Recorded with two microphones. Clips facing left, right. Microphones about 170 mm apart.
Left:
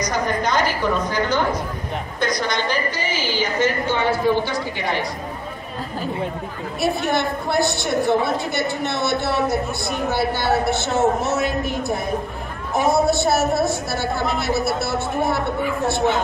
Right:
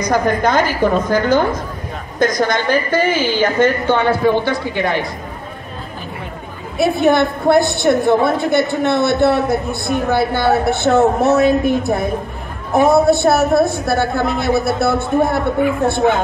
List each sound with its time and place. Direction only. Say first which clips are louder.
0.1 s a woman's voice: right 8 dB; 55° right (ahead or behind)
6.8 s speech: right 8 dB; 55° right (ahead or behind)